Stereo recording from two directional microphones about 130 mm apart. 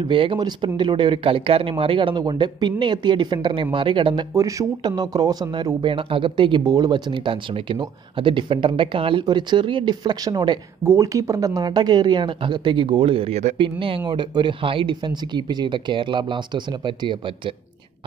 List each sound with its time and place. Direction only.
0.0 s speech: 40° right (ahead or behind)
4.3 s speech: 25° right (ahead or behind)
10.8 s speech: 20° right (ahead or behind); by 13.6 s 55° right (ahead or behind)
13.6 s speech: 45° right (ahead or behind)